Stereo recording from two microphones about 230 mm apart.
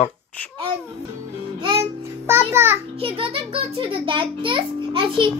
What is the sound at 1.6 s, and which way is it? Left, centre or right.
Music, right.